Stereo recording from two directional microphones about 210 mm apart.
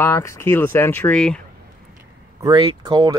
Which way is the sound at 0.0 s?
15° left (ahead or behind).